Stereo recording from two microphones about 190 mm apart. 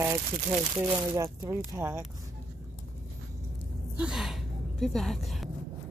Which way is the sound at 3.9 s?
5° right (ahead or behind).